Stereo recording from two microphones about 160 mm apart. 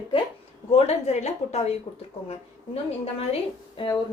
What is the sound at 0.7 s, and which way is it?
Speech, 45° left (ahead or behind).